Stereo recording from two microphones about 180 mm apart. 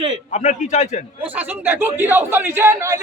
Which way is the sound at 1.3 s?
10° right (ahead or behind).